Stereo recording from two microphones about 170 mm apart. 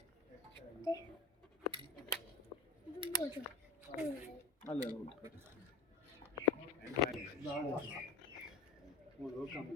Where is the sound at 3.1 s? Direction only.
25° left (ahead or behind).